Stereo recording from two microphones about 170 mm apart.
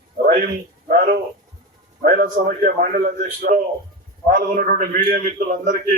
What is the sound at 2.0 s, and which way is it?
A man's voice, 60° right (ahead or behind).